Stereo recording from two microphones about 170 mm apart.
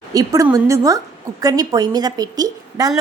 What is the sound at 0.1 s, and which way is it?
A woman's voice, 20° right (ahead or behind).